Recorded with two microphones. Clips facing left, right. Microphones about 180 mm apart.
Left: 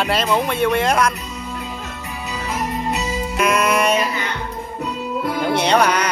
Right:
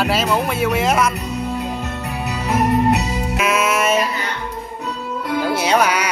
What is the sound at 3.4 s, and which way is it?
Music, 5° right (ahead or behind).